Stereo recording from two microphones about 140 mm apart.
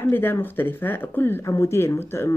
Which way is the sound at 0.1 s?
15° left (ahead or behind).